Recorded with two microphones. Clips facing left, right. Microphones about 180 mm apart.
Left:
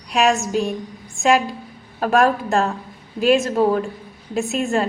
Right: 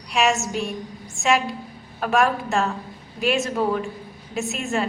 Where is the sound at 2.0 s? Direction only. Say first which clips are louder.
Left 4 dB; 35° left (ahead or behind).